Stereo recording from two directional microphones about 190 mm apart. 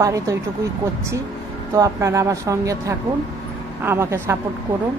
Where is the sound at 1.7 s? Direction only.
15° right (ahead or behind).